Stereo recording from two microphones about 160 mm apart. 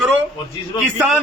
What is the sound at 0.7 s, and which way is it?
Speech, 30° left (ahead or behind).